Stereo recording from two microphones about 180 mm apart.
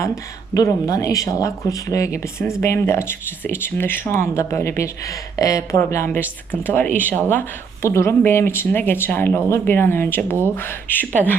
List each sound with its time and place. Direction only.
0.5 s speech: 20° left (ahead or behind)